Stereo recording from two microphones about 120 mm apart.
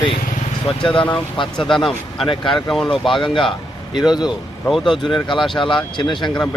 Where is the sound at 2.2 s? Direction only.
45° left (ahead or behind).